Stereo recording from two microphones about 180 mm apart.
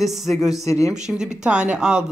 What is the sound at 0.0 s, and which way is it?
Speech, centre (ahead or behind).